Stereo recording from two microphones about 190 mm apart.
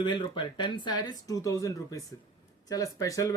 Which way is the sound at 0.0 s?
25° left (ahead or behind).